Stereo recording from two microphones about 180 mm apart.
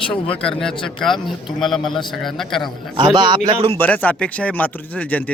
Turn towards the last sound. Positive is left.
turn(degrees=10)  # may be behind; listen again after turning